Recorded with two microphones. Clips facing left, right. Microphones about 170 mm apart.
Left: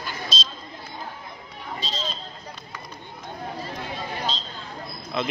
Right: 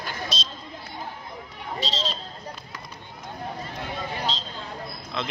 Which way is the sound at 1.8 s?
90° right.